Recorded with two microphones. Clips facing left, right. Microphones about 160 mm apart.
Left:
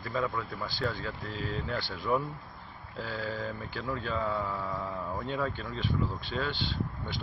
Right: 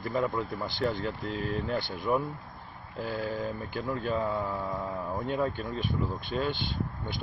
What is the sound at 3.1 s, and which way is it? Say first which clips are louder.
Speech: right 3 dB; 20° right (ahead or behind).